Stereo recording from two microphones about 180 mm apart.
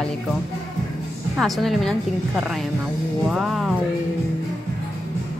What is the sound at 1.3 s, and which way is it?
A woman's voice, centre (ahead or behind).